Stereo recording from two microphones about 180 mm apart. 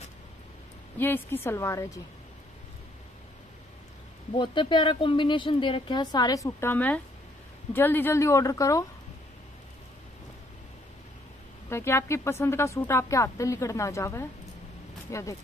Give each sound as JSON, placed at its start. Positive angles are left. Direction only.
{"t": 0.9, "sound": "a woman's voice", "side_deg": 10}
{"t": 4.3, "sound": "a woman's voice", "side_deg": 25}
{"t": 11.7, "sound": "a woman's voice", "side_deg": 15}